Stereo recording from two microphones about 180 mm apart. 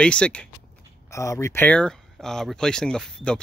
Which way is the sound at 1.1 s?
15° left (ahead or behind).